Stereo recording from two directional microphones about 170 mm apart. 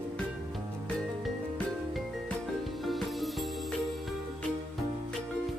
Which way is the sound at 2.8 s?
Centre (ahead or behind).